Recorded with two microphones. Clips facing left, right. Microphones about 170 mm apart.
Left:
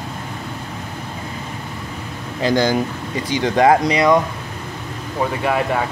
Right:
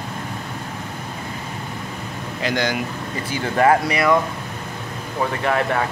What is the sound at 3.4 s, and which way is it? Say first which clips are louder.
Speech: left 3 dB; 15° left (ahead or behind).